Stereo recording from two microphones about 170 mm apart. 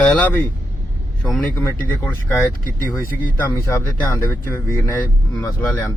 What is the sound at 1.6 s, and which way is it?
Speech, 15° left (ahead or behind).